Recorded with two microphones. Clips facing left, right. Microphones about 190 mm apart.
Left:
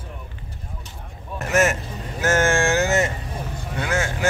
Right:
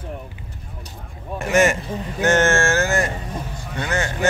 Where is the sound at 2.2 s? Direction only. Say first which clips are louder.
Right 2 dB; 10° left (ahead or behind).